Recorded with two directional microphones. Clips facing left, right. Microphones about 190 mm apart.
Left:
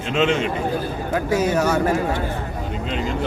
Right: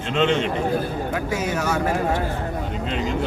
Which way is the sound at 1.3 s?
40° left (ahead or behind).